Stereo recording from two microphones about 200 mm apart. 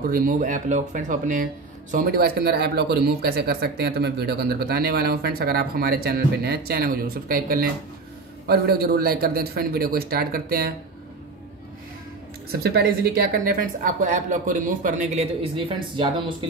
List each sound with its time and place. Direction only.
0.0 s speech: 45° right (ahead or behind)
12.4 s a woman's voice: 50° right (ahead or behind); by 16.4 s 25° right (ahead or behind)